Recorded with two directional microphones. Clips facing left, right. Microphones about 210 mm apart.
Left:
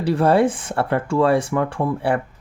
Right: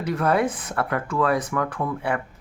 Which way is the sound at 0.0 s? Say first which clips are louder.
Left 6 dB; 30° left (ahead or behind).